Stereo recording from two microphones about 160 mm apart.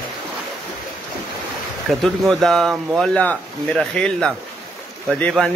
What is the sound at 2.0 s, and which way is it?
Speech, centre (ahead or behind).